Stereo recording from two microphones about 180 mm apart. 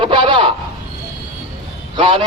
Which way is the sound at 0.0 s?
25° right (ahead or behind).